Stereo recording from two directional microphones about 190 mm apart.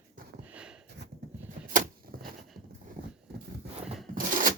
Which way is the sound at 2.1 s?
55° right (ahead or behind).